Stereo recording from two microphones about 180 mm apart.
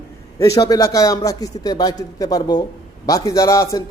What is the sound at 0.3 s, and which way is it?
A man's voice, 20° left (ahead or behind).